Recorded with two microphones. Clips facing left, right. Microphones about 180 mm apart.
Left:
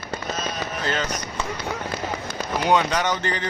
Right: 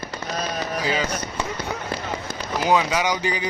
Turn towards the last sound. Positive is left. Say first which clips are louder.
# right 1 dB
turn(degrees=-10)  # may be behind; listen again after turning